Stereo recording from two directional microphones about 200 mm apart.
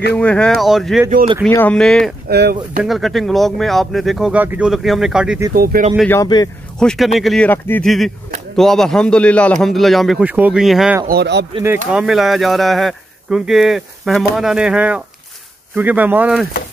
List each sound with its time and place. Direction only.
0.2 s speech: 5° left (ahead or behind)
2.2 s speech: 50° right (ahead or behind)
2.8 s speech: centre (ahead or behind)
5.5 s speech: 45° right (ahead or behind)
6.2 s a man's voice: 20° left (ahead or behind)
6.8 s speech: 5° left (ahead or behind)
11.1 s speech: 55° right (ahead or behind)
11.9 s speech: 5° right (ahead or behind)